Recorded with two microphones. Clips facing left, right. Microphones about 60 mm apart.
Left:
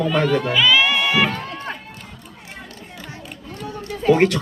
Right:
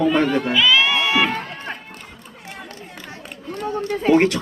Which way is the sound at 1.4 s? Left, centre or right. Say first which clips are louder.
Left 1 dB; centre.